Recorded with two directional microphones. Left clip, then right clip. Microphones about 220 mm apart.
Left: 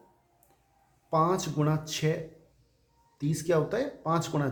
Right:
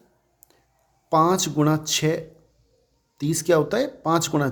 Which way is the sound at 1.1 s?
50° right (ahead or behind).